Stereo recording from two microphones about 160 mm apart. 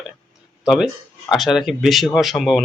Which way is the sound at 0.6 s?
5° right (ahead or behind).